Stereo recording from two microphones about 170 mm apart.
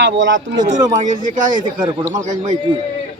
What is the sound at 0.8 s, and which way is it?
Speech, 25° right (ahead or behind).